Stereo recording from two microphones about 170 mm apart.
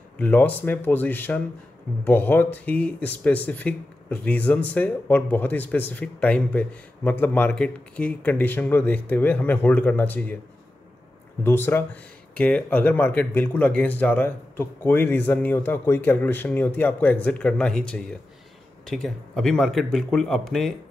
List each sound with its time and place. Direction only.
0.2 s speech: 10° left (ahead or behind)
11.4 s speech: 15° left (ahead or behind)